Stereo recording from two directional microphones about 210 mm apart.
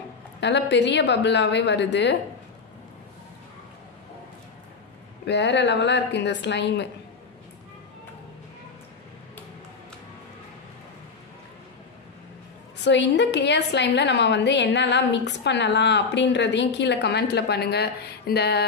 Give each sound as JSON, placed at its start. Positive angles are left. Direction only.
{"t": 0.4, "sound": "a woman's voice", "side_deg": 55}
{"t": 5.2, "sound": "a woman's voice", "side_deg": 55}
{"t": 12.8, "sound": "a woman's voice", "side_deg": 55}